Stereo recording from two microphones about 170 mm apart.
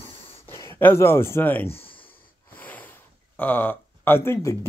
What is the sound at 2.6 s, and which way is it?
Snort, 10° left (ahead or behind).